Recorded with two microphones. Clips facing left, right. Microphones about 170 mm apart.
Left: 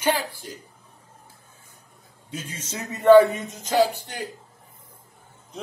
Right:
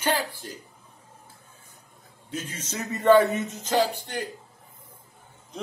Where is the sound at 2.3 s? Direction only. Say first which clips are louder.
Right 1 dB; 10° left (ahead or behind).